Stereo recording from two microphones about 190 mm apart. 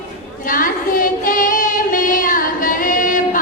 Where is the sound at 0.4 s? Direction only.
45° left (ahead or behind).